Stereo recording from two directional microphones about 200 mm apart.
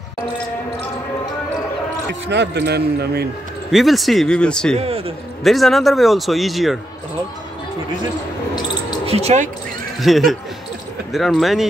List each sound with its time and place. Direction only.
2.3 s speech: 60° right (ahead or behind)
3.7 s speech: centre (ahead or behind)
4.7 s a man's voice: 30° right (ahead or behind)
5.4 s speech: centre (ahead or behind)
9.0 s speech: 30° right (ahead or behind)
10.0 s speech: centre (ahead or behind)